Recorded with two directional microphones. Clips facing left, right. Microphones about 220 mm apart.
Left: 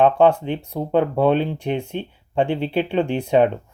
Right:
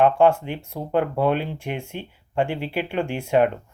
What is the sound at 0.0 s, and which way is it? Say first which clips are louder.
Speech: left 2 dB; 20° left (ahead or behind).